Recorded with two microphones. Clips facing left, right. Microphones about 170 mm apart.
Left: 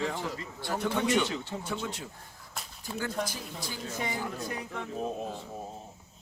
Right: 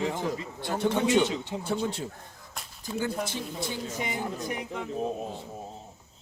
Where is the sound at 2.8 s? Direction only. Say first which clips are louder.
Right 3 dB; 20° right (ahead or behind).